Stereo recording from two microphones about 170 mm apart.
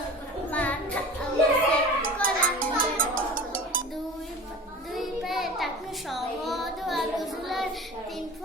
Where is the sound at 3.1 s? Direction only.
55° right (ahead or behind).